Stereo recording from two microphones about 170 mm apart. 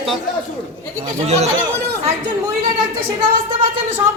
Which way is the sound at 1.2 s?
40° right (ahead or behind).